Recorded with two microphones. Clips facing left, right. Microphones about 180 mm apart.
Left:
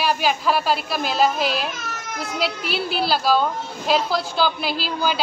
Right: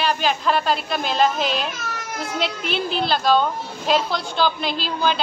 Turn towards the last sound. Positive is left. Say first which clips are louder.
# right 1 dB
turn(degrees=5)  # may be behind; listen again after turning